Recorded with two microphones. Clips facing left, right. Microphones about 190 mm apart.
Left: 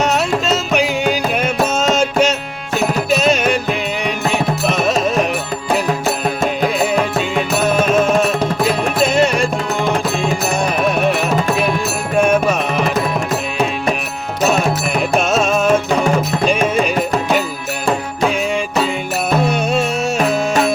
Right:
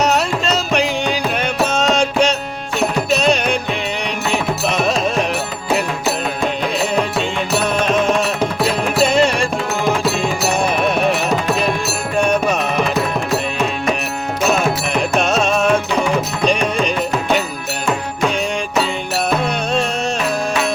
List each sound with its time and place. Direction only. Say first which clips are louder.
0.0 s music: even; centre (ahead or behind)
6.4 s music: left 3 dB; 45° left (ahead or behind)
8.2 s music: left 2 dB; 50° left (ahead or behind)
9.0 s music: left 1 dB; centre (ahead or behind)
10.6 s carnatic music: left 1 dB; centre (ahead or behind)
12.1 s music: left 3 dB; 5° left (ahead or behind)
15.1 s music: left 2 dB; centre (ahead or behind)
20.1 s music: left 6 dB; 45° left (ahead or behind)